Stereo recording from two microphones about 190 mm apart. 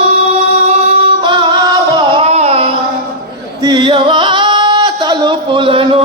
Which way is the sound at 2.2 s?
35° right (ahead or behind).